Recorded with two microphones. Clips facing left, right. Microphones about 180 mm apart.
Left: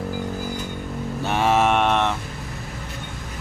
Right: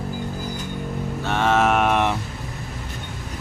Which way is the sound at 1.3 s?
10° left (ahead or behind).